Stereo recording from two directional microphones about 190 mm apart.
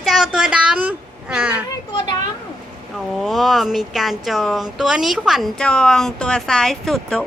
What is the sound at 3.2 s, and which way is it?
Speech, centre (ahead or behind).